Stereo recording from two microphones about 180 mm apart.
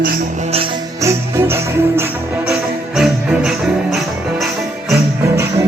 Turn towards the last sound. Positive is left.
turn(degrees=-5)  # may be behind; listen again after turning